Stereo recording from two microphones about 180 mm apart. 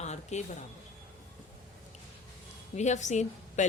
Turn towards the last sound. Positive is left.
turn(degrees=40)  # may be behind; listen again after turning